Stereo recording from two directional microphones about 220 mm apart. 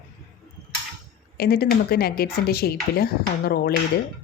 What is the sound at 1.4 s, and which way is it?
Speech, 45° left (ahead or behind).